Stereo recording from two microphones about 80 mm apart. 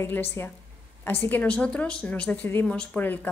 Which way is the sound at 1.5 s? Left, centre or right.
Centre.